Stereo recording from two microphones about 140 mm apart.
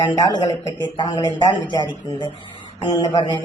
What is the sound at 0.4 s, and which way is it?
Speech, 30° left (ahead or behind).